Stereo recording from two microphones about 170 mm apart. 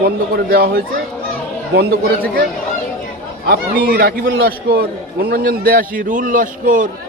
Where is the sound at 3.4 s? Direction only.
60° right (ahead or behind).